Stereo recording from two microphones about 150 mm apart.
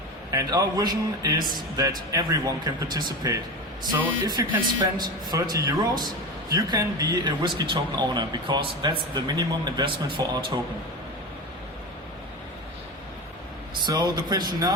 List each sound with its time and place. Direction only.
0.3 s speech: 25° right (ahead or behind)
13.8 s speech: 25° right (ahead or behind)